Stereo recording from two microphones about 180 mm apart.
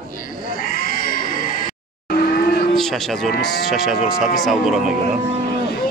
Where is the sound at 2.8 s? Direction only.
Centre (ahead or behind).